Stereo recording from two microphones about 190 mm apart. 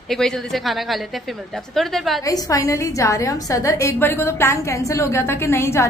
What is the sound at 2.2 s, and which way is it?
A woman's voice, 20° left (ahead or behind).